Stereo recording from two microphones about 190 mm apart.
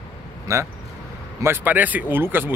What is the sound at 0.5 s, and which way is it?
Speech, 15° right (ahead or behind).